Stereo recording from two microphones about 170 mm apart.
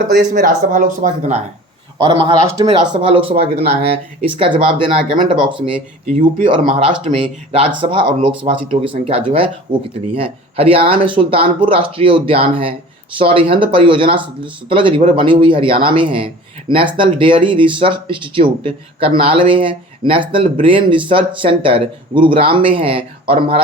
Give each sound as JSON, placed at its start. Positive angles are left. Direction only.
{"t": 0.1, "sound": "speech", "side_deg": -60}
{"t": 2.0, "sound": "speech", "side_deg": -30}
{"t": 3.5, "sound": "speech", "side_deg": -70}
{"t": 3.8, "sound": "speech", "side_deg": -35}